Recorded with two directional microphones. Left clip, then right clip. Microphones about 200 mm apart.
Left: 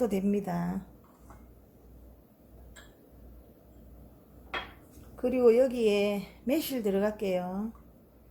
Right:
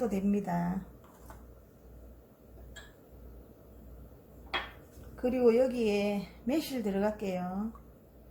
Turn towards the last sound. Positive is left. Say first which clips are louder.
# left 4 dB
turn(degrees=45)  # may be behind; listen again after turning